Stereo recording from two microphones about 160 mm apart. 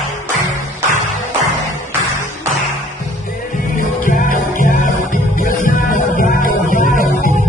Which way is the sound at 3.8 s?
55° left (ahead or behind).